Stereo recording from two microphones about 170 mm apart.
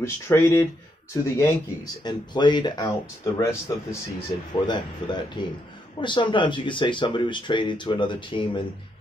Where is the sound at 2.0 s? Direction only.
25° left (ahead or behind).